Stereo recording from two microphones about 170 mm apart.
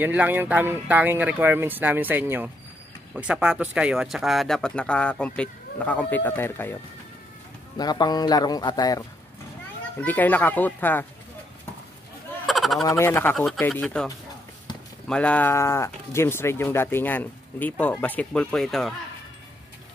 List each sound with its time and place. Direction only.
0.0 s speech: 10° right (ahead or behind); by 6.8 s 15° left (ahead or behind)
7.7 s a man's voice: 25° left (ahead or behind)
9.9 s speech: 10° left (ahead or behind)
12.4 s a sound: centre (ahead or behind)
12.8 s speech: 15° left (ahead or behind)
15.0 s speech: 5° left (ahead or behind)